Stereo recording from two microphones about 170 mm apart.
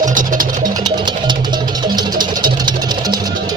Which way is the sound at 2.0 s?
25° right (ahead or behind).